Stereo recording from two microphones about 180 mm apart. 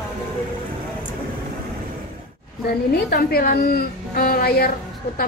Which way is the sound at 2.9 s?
60° left (ahead or behind).